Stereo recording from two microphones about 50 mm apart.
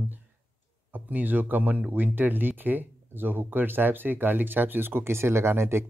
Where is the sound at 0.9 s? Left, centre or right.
Right.